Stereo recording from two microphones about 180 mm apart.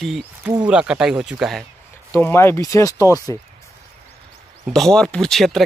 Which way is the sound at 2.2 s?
15° left (ahead or behind).